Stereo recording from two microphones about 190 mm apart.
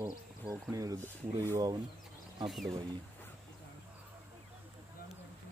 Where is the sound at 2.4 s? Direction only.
Centre (ahead or behind).